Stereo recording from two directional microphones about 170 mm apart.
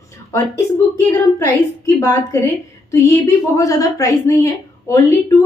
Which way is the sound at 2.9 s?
15° left (ahead or behind).